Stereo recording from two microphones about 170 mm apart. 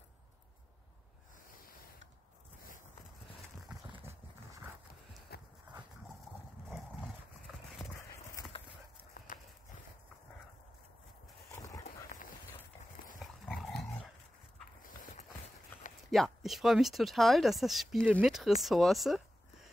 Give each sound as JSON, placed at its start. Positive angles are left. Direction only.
{"t": 5.3, "sound": "clip-clop", "side_deg": 70}
{"t": 8.5, "sound": "horse", "side_deg": 30}
{"t": 9.3, "sound": "clip-clop", "side_deg": 50}
{"t": 11.8, "sound": "dog", "side_deg": 50}
{"t": 13.2, "sound": "dog", "side_deg": 0}
{"t": 14.8, "sound": "clip-clop", "side_deg": 50}
{"t": 16.1, "sound": "speech", "side_deg": 0}